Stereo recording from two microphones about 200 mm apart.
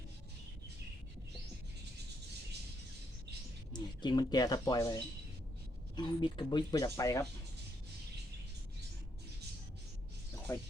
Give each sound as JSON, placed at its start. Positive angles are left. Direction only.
{"t": 3.7, "sound": "speech", "side_deg": 20}